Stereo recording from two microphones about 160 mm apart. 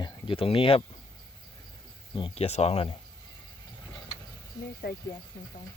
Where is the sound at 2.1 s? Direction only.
35° left (ahead or behind).